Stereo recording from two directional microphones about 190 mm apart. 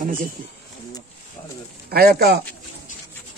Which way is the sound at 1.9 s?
55° right (ahead or behind).